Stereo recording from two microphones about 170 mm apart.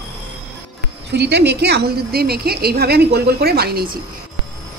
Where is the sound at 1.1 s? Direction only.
80° right; by 4.0 s 60° right (ahead or behind).